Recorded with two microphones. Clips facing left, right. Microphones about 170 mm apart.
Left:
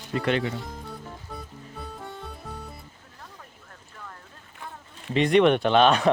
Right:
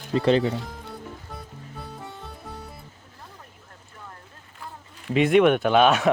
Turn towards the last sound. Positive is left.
turn(degrees=-5)  # may be behind; listen again after turning